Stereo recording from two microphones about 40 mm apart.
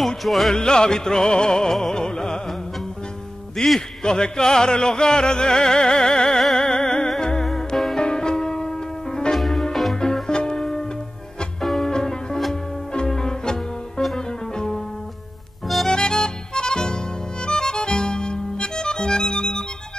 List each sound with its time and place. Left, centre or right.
0.2 s music: centre
0.6 s music: centre
3.5 s music: centre
4.0 s music: centre
7.4 s music: centre
8.0 s music: centre
10.2 s music: centre
11.6 s music: centre
11.9 s music: centre
15.9 s music: left